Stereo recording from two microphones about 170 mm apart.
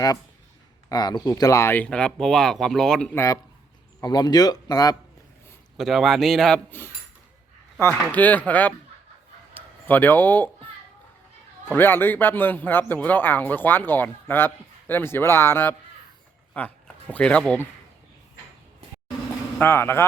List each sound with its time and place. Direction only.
0.9 s speech: 25° left (ahead or behind); by 3.2 s 5° left (ahead or behind)
4.0 s speech: 25° left (ahead or behind)
5.7 s a man's voice: centre (ahead or behind)
9.6 s a sound: 10° left (ahead or behind)
11.6 s a man's voice: 10° left (ahead or behind)
19.5 s a man's voice: 15° left (ahead or behind)